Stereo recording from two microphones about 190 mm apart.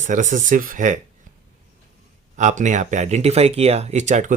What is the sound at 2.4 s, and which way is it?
Speech, 40° right (ahead or behind).